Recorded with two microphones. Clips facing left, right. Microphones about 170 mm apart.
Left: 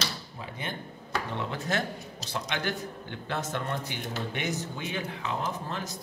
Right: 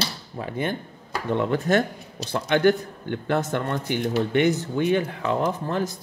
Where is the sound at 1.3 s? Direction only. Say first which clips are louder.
Right 13 dB; 55° right (ahead or behind).